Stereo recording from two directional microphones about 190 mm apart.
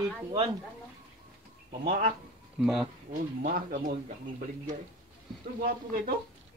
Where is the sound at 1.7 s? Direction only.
40° right (ahead or behind).